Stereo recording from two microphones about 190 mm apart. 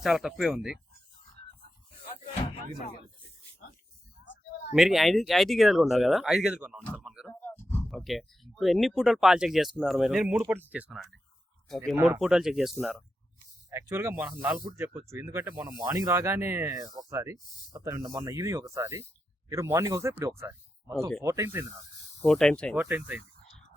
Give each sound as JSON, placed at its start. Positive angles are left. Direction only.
{"t": 0.0, "sound": "speech", "side_deg": 0}
{"t": 4.7, "sound": "speech", "side_deg": 0}
{"t": 7.3, "sound": "a sound", "side_deg": 10}
{"t": 9.0, "sound": "speech", "side_deg": 0}
{"t": 13.7, "sound": "speech", "side_deg": -15}
{"t": 22.2, "sound": "speech", "side_deg": 5}
{"t": 22.7, "sound": "speech", "side_deg": -10}